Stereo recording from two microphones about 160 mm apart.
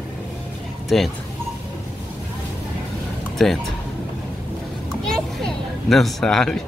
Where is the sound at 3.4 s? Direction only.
Centre (ahead or behind).